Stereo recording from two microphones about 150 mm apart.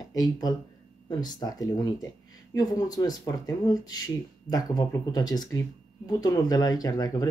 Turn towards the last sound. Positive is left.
turn(degrees=25)  # may be behind; listen again after turning